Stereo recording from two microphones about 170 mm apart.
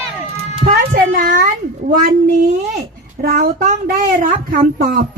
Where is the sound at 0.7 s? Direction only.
55° right (ahead or behind).